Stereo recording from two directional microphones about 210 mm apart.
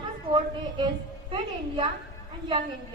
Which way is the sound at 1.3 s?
25° right (ahead or behind).